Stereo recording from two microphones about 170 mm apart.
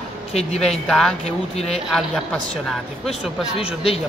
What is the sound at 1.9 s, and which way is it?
Speech, 5° left (ahead or behind).